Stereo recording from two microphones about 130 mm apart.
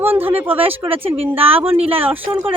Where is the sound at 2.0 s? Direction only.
15° right (ahead or behind).